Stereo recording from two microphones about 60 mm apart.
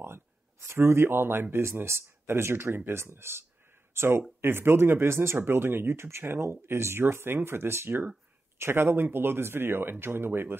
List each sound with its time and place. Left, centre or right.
0.0 s speech: right